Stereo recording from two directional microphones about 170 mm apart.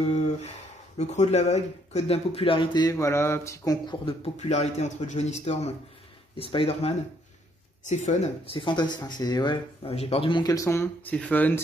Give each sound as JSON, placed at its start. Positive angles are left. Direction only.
{"t": 0.0, "sound": "speech", "side_deg": 40}
{"t": 4.4, "sound": "speech", "side_deg": 40}
{"t": 8.6, "sound": "speech", "side_deg": 25}